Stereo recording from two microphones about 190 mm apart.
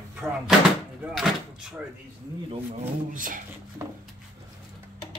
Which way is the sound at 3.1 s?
45° right (ahead or behind).